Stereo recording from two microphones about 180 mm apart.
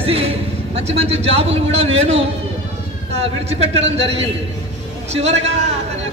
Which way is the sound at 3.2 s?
35° right (ahead or behind).